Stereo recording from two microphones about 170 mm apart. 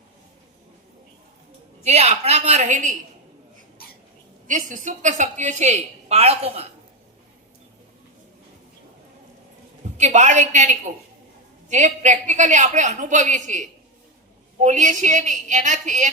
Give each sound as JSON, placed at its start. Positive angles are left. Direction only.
{"t": 1.8, "sound": "a woman's voice", "side_deg": -40}
{"t": 4.4, "sound": "a woman's voice", "side_deg": -50}
{"t": 10.0, "sound": "a woman's voice", "side_deg": -45}